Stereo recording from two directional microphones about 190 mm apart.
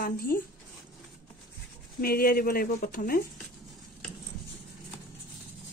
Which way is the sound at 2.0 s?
50° left (ahead or behind).